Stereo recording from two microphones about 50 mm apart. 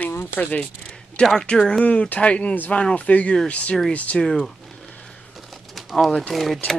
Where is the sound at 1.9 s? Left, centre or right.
Left.